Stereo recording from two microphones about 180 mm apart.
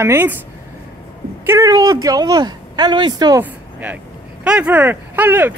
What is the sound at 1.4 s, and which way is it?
Speech, 15° right (ahead or behind).